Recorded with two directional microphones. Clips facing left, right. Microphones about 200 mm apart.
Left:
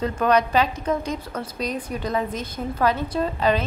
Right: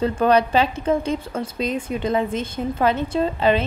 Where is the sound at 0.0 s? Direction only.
30° right (ahead or behind).